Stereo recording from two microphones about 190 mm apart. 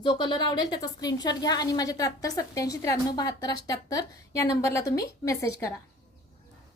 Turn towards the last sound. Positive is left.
turn(degrees=15)  # may be behind; listen again after turning